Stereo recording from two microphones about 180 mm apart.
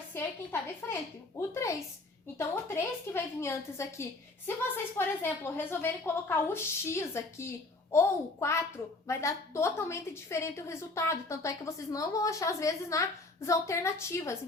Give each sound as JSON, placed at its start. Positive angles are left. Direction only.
{"t": 0.1, "sound": "a woman's voice", "side_deg": 15}